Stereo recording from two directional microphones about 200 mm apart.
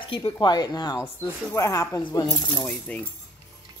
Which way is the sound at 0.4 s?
20° left (ahead or behind).